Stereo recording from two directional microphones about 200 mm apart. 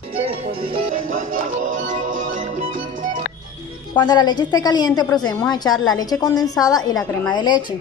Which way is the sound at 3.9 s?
20° left (ahead or behind).